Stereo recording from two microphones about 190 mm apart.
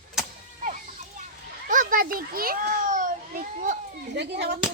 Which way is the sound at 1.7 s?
45° right (ahead or behind).